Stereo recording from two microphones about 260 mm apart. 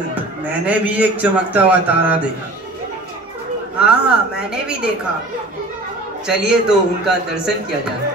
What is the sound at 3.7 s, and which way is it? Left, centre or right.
A woman's voice, centre.